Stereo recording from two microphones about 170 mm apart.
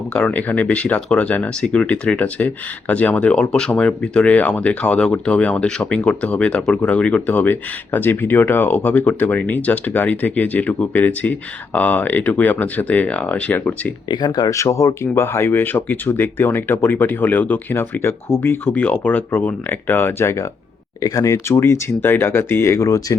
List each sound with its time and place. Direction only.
0.1 s speech: 5° left (ahead or behind)
14.1 s speech: 25° left (ahead or behind)